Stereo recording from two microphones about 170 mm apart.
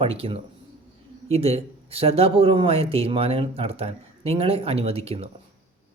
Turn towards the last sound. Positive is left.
turn(degrees=-35)  # may be behind; listen again after turning